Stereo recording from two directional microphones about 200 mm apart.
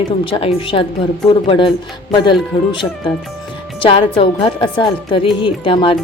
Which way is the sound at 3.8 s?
25° left (ahead or behind).